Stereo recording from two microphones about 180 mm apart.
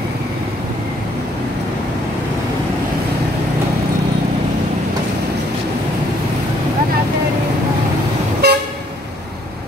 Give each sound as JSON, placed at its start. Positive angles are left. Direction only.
{"t": 8.4, "sound": "toot", "side_deg": -65}